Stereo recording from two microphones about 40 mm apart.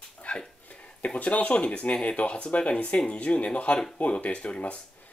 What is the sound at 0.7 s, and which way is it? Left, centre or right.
Speech, left.